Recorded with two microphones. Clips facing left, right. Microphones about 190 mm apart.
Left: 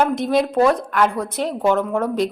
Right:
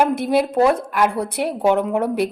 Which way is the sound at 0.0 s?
10° right (ahead or behind).